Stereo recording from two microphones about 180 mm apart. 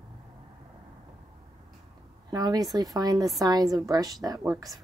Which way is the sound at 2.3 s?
20° right (ahead or behind).